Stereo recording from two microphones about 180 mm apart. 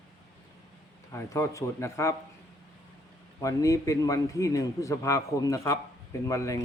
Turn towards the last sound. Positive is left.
turn(degrees=15)  # may be behind; listen again after turning